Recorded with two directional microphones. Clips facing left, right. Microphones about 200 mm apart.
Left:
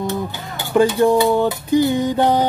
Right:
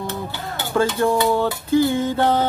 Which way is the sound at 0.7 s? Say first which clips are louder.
Left 5 dB; 15° left (ahead or behind).